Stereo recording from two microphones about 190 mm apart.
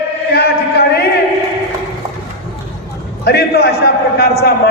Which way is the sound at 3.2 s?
55° left (ahead or behind).